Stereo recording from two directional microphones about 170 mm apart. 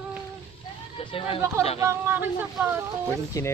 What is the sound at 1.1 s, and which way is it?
Speech, 35° left (ahead or behind).